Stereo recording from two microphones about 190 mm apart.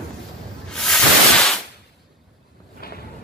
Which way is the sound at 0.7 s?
Centre (ahead or behind).